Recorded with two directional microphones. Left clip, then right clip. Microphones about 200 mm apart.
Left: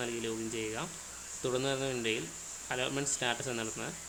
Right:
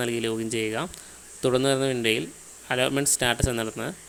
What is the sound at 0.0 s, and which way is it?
Speech, 50° right (ahead or behind).